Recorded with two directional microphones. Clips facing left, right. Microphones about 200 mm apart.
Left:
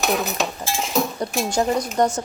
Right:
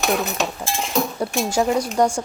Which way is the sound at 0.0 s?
Centre (ahead or behind).